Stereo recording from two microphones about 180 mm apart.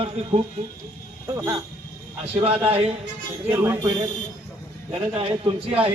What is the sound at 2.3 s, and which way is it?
Speech, 30° right (ahead or behind).